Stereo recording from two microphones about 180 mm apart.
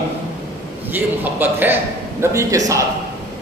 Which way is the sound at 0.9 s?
10° right (ahead or behind).